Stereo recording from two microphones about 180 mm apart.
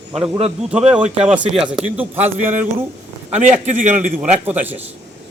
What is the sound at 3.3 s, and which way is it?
Speech, 40° right (ahead or behind).